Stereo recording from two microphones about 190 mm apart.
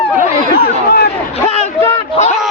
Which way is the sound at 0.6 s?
55° left (ahead or behind).